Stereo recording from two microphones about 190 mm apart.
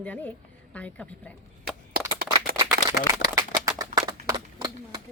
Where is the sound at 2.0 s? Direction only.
55° right (ahead or behind).